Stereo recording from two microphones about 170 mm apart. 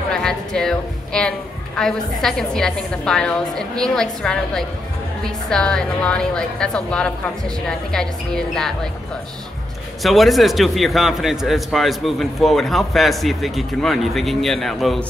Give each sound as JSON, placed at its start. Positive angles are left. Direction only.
{"t": 0.1, "sound": "a woman's voice", "side_deg": 5}
{"t": 10.0, "sound": "a man's voice", "side_deg": 0}